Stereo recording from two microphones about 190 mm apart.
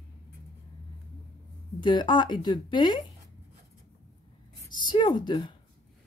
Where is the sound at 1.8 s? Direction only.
25° left (ahead or behind).